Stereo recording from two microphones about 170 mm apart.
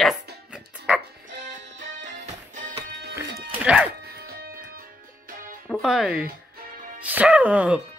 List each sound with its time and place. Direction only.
0.5 s music: 5° right (ahead or behind)
2.5 s music: 45° right (ahead or behind)
3.2 s music: 10° right (ahead or behind)
5.7 s speech: 5° right (ahead or behind)